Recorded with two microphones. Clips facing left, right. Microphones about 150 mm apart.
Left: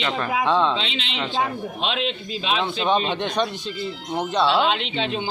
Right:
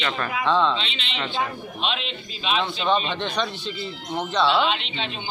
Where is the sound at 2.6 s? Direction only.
15° left (ahead or behind).